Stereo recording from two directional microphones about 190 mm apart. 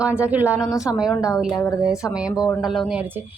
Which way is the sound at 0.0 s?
5° right (ahead or behind).